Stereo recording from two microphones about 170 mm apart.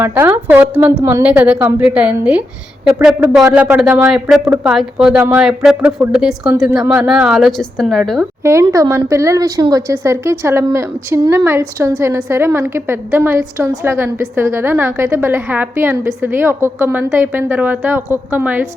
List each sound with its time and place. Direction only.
0.0 s a woman's voice: 15° right (ahead or behind); by 8.3 s centre (ahead or behind)
8.7 s a woman's voice: 20° right (ahead or behind)